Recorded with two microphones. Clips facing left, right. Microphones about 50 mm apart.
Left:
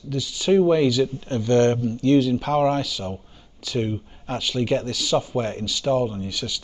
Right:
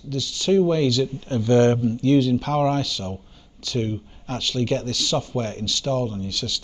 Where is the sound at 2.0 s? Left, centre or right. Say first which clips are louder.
Left 2 dB; centre.